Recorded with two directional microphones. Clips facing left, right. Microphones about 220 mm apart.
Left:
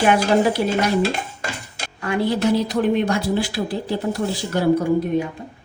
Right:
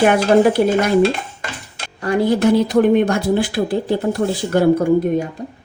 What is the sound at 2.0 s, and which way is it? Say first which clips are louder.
Speech: right 5 dB; 40° right (ahead or behind).